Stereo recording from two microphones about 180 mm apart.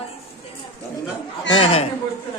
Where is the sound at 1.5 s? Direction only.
30° left (ahead or behind).